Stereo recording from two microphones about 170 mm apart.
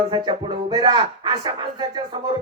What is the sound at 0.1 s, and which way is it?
Speech, 30° right (ahead or behind).